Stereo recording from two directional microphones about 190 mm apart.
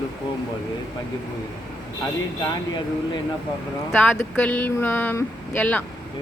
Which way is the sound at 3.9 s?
5° left (ahead or behind).